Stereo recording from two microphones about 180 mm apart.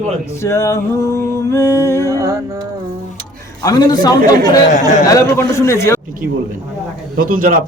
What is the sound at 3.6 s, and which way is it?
Speech, 20° left (ahead or behind).